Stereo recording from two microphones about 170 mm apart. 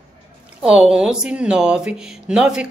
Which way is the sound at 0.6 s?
5° right (ahead or behind).